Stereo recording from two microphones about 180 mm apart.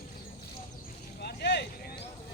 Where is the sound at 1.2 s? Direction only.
65° left (ahead or behind).